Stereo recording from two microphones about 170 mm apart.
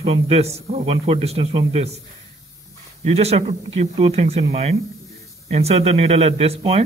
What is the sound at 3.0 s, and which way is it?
A man's voice, 35° right (ahead or behind).